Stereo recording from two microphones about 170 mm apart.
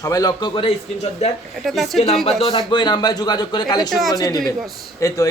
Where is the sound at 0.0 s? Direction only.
20° left (ahead or behind).